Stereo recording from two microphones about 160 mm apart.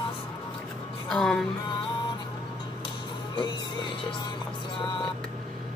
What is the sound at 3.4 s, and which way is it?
Music, 30° left (ahead or behind).